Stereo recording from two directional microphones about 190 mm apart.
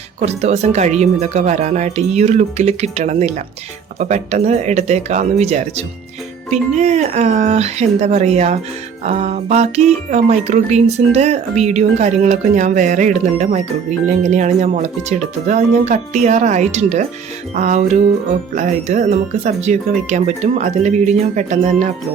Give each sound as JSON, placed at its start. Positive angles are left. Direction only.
{"t": 0.2, "sound": "speech", "side_deg": -35}